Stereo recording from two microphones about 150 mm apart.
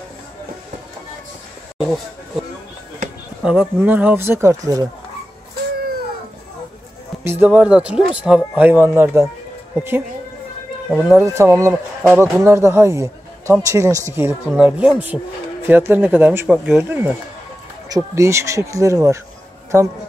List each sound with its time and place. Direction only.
3.4 s speech: 10° right (ahead or behind)
7.2 s speech: 10° right (ahead or behind)